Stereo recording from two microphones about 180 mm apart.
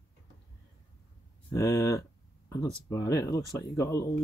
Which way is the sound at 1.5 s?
15° left (ahead or behind).